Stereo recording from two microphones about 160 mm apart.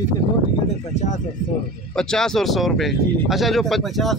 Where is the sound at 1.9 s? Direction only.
5° left (ahead or behind).